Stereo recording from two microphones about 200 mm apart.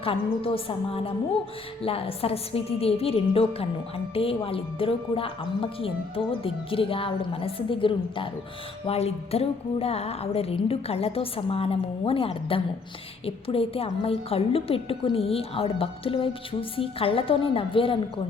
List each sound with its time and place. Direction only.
0.0 s a woman's voice: 25° left (ahead or behind)